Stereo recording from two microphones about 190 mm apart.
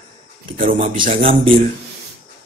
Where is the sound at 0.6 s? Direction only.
40° right (ahead or behind).